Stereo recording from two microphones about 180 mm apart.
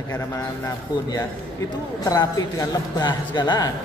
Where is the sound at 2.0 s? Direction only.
20° left (ahead or behind).